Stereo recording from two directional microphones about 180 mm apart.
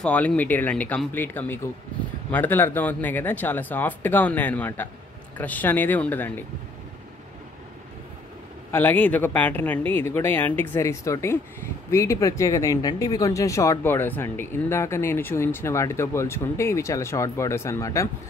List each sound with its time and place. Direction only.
0.0 s speech: 5° left (ahead or behind)
8.7 s speech: 10° left (ahead or behind)